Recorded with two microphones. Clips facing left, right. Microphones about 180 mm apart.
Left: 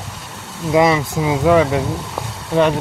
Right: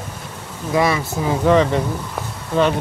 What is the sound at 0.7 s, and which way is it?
Speech, 20° left (ahead or behind).